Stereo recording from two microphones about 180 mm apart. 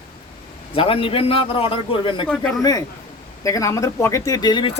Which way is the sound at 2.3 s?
5° left (ahead or behind).